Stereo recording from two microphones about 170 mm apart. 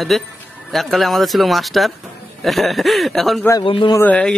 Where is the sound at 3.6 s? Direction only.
30° left (ahead or behind).